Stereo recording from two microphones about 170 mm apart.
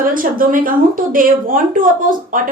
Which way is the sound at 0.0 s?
55° right (ahead or behind).